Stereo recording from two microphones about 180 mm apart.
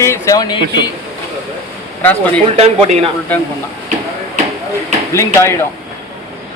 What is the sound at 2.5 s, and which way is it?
Speech, 35° right (ahead or behind).